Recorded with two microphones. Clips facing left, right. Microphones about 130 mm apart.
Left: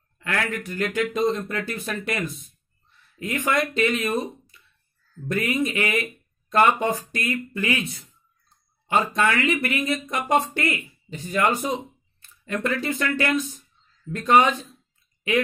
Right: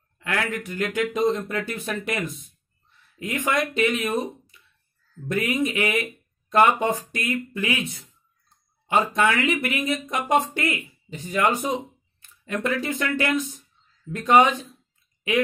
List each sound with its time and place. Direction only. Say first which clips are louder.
0.2 s speech: even; 15° right (ahead or behind)
8.8 s speech: right 1 dB; 15° right (ahead or behind)